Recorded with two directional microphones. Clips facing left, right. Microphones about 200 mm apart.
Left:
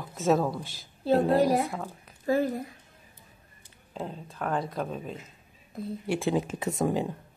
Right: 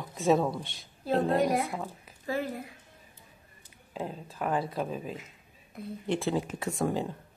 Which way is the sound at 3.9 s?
5° right (ahead or behind).